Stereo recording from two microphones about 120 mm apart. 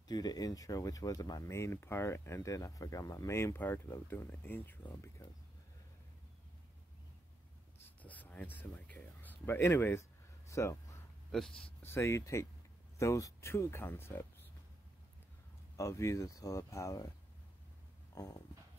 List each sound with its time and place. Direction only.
0.1 s speech: 35° left (ahead or behind); by 4.7 s 15° left (ahead or behind)
7.8 s a sound: 15° left (ahead or behind)
10.5 s speech: 25° left (ahead or behind)
11.3 s speech: 5° left (ahead or behind)
11.8 s speech: 20° left (ahead or behind)
15.7 s speech: 25° left (ahead or behind)
18.1 s a sound: 30° left (ahead or behind)